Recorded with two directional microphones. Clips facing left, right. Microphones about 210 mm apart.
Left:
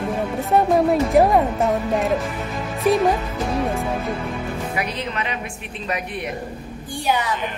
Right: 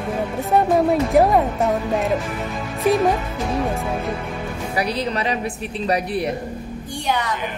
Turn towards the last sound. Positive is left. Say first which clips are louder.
# right 6 dB
turn(degrees=-35)  # may be behind; listen again after turning